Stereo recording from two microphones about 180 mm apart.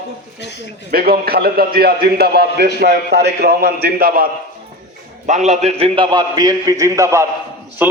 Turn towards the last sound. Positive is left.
turn(degrees=-10)  # may be behind; listen again after turning